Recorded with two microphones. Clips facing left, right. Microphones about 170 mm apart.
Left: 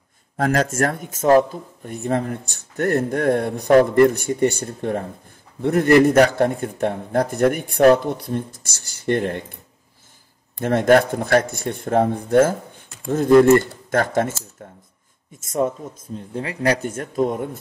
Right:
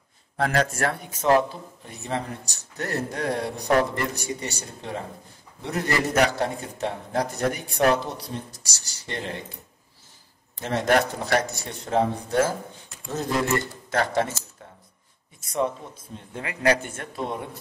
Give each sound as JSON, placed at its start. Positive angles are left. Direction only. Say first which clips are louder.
{"t": 0.4, "sound": "a man's voice", "louder": "left 4 dB", "side_deg": 45}
{"t": 10.6, "sound": "a man's voice", "louder": "left 7 dB", "side_deg": 55}
{"t": 15.4, "sound": "a man's voice", "louder": "left 4 dB", "side_deg": 45}
{"t": 16.2, "sound": "speech", "louder": "left 6 dB", "side_deg": 35}